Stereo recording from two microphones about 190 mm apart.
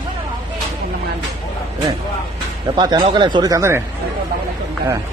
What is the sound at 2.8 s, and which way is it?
Speech, 20° right (ahead or behind).